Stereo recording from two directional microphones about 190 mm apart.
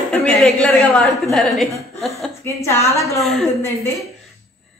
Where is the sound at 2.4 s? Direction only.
15° left (ahead or behind).